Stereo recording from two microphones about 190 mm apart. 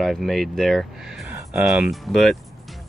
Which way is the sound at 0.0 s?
Centre (ahead or behind).